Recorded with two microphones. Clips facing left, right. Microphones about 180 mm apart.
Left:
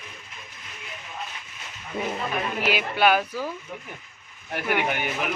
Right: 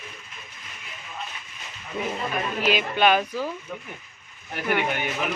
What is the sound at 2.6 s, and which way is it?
Speech, 10° left (ahead or behind).